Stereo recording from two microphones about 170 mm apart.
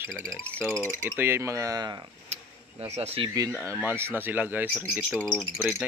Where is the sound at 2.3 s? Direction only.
35° right (ahead or behind).